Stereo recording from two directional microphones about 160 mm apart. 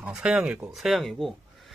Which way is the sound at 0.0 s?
5° right (ahead or behind).